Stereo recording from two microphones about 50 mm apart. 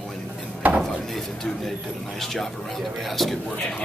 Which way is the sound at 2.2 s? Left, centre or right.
Centre.